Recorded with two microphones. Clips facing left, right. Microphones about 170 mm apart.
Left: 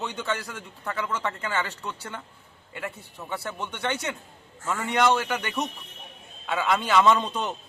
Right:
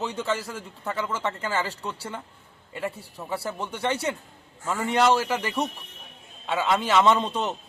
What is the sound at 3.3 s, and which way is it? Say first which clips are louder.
A man's voice: right 3 dB; 30° right (ahead or behind).